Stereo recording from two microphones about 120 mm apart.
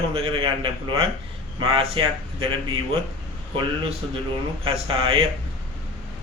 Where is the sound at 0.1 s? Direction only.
50° right (ahead or behind).